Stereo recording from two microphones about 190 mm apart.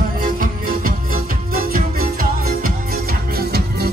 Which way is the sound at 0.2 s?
50° right (ahead or behind).